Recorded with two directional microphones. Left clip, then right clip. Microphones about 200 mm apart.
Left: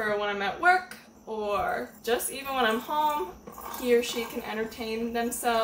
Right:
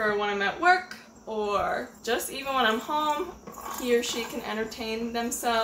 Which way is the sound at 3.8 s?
5° right (ahead or behind).